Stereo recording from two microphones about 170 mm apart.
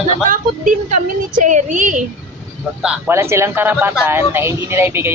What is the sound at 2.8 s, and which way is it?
Speech, 5° right (ahead or behind).